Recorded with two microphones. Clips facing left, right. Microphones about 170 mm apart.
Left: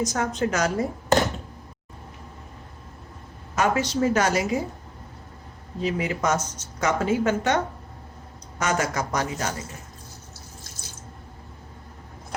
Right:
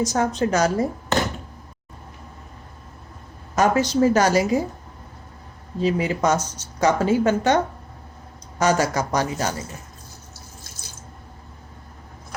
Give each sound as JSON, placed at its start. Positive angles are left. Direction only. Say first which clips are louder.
{"t": 0.0, "sound": "speech", "louder": "right 4 dB", "side_deg": -30}
{"t": 3.5, "sound": "speech", "louder": "right 4 dB", "side_deg": -40}
{"t": 5.8, "sound": "speech", "louder": "right 4 dB", "side_deg": -30}